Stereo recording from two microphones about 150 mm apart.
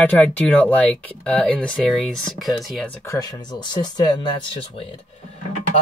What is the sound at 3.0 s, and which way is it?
Speech, 25° left (ahead or behind).